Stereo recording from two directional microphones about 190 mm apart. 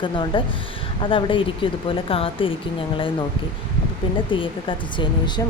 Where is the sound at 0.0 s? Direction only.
25° left (ahead or behind).